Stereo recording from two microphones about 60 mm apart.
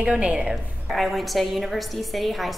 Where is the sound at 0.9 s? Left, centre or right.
Centre.